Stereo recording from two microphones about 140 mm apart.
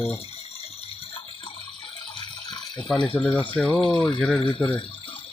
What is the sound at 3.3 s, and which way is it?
Speech, 35° left (ahead or behind).